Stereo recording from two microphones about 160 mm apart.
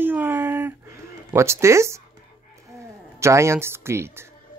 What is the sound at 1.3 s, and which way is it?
Speech, 15° right (ahead or behind).